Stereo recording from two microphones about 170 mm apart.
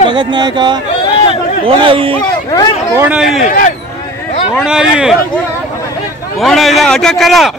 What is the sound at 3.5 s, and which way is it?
Speech, 50° left (ahead or behind).